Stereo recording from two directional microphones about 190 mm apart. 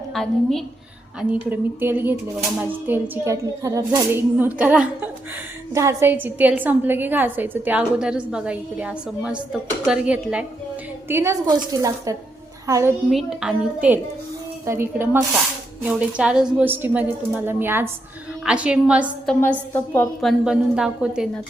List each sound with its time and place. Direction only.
0.1 s a woman's voice: centre (ahead or behind)
1.3 s a woman's voice: 10° right (ahead or behind)
13.1 s a woman's voice: centre (ahead or behind)
19.3 s a woman's voice: 10° left (ahead or behind)
20.2 s a woman's voice: 5° right (ahead or behind)